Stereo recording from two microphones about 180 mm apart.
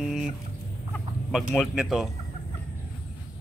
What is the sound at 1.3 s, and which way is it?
Speech, centre (ahead or behind).